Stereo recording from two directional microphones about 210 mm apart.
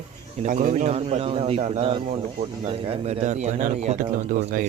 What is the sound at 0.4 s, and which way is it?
Speech, 35° right (ahead or behind).